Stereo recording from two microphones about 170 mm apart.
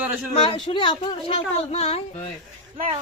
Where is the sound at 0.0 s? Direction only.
10° right (ahead or behind).